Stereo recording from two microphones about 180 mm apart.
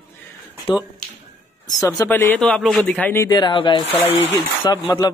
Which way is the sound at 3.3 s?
25° left (ahead or behind).